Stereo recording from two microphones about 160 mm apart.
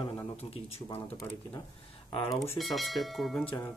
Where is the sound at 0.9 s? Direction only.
15° left (ahead or behind).